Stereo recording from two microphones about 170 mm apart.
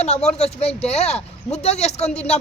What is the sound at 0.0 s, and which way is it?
A man's voice, 40° left (ahead or behind).